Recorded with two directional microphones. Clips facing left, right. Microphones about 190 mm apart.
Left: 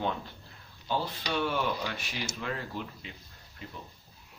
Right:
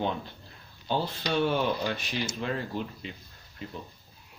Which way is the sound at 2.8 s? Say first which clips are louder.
Right 4 dB; 25° right (ahead or behind).